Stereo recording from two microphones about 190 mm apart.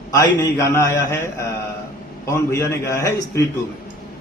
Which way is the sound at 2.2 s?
15° left (ahead or behind).